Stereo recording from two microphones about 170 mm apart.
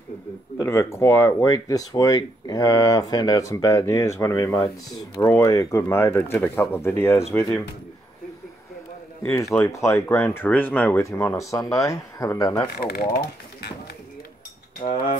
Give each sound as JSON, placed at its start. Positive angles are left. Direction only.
{"t": 0.6, "sound": "speech", "side_deg": 15}
{"t": 9.2, "sound": "speech", "side_deg": 15}
{"t": 12.8, "sound": "speech", "side_deg": 60}
{"t": 14.8, "sound": "speech", "side_deg": 40}